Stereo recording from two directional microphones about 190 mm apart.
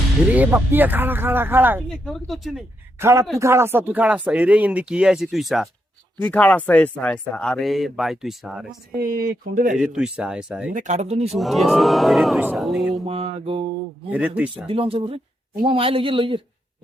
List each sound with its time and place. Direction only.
0.3 s speech: 10° right (ahead or behind)
1.9 s speech: centre (ahead or behind)
3.0 s speech: 15° right (ahead or behind)
8.9 s speech: 50° right (ahead or behind)
9.7 s speech: 5° right (ahead or behind)
10.7 s speech: 40° right (ahead or behind)
11.3 s speech: centre (ahead or behind)
13.1 s speech: 30° right (ahead or behind)
14.1 s speech: 10° right (ahead or behind)
14.5 s a man's voice: 30° right (ahead or behind)